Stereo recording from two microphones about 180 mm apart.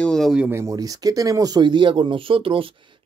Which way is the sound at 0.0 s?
Centre (ahead or behind).